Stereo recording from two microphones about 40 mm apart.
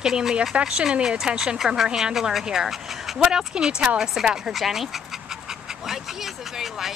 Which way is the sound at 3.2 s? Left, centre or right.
Right.